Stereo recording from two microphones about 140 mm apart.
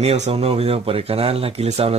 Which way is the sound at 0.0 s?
50° right (ahead or behind).